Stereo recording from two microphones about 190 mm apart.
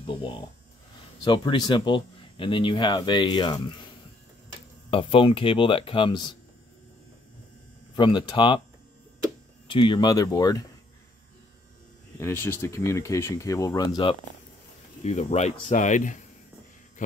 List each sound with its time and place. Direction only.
0.0 s speech: 25° left (ahead or behind)
4.9 s speech: 30° left (ahead or behind)
7.9 s speech: 25° left (ahead or behind)
9.7 s speech: 25° left (ahead or behind)
12.2 s speech: 15° left (ahead or behind)
15.0 s speech: 35° left (ahead or behind)